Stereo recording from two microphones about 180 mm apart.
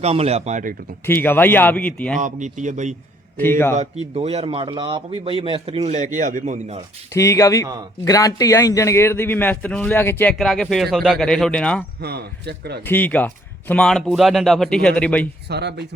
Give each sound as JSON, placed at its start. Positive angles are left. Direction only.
{"t": 0.0, "sound": "a man's voice", "side_deg": -35}
{"t": 1.0, "sound": "a man's voice", "side_deg": 10}
{"t": 2.1, "sound": "speech", "side_deg": -45}
{"t": 4.1, "sound": "a man's voice", "side_deg": -35}
{"t": 7.1, "sound": "a man's voice", "side_deg": 15}
{"t": 11.9, "sound": "a man's voice", "side_deg": -65}
{"t": 12.8, "sound": "speech", "side_deg": 10}
{"t": 15.4, "sound": "speech", "side_deg": -65}